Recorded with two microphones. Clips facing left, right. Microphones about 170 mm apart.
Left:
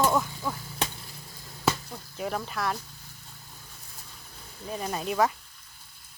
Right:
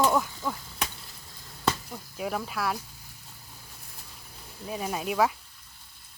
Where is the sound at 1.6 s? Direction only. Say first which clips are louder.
Left 1 dB; 5° right (ahead or behind).